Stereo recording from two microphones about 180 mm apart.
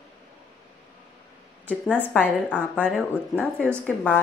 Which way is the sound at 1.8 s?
10° right (ahead or behind).